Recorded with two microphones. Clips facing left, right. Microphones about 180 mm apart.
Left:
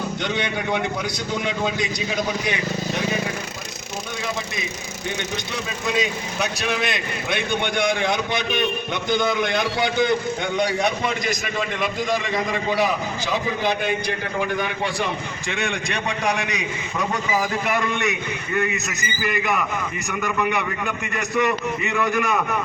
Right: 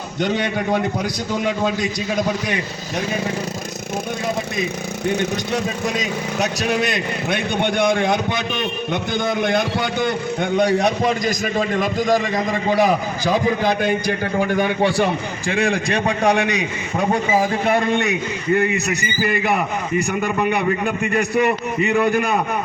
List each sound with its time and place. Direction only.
0.3 s a man's voice: 40° right (ahead or behind)
6.0 s a man's voice: 40° right (ahead or behind)
10.6 s a man's voice: 45° right (ahead or behind)
12.8 s a man's voice: 45° right (ahead or behind)
15.4 s a man's voice: 35° right (ahead or behind)